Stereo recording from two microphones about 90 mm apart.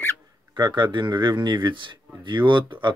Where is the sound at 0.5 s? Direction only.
60° right (ahead or behind).